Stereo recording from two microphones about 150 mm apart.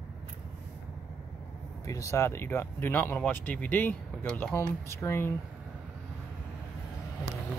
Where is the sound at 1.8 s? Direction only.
20° left (ahead or behind).